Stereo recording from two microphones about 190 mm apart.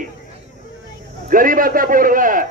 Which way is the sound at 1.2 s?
45° right (ahead or behind).